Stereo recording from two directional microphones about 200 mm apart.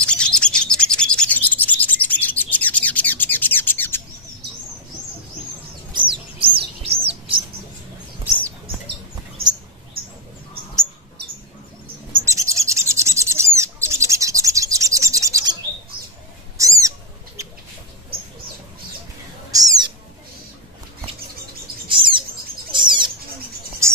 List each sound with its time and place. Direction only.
0.0 s bird: 5° left (ahead or behind)
5.9 s bird: 25° right (ahead or behind)
12.3 s bird: 15° right (ahead or behind)
16.5 s owl: 15° right (ahead or behind)
19.5 s owl: 20° right (ahead or behind)
21.8 s bird: 25° right (ahead or behind)
22.7 s bird flight: 25° right (ahead or behind)
23.8 s a sound: 15° right (ahead or behind)